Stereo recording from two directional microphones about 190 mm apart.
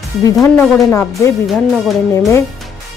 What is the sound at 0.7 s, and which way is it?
Speech, 15° left (ahead or behind).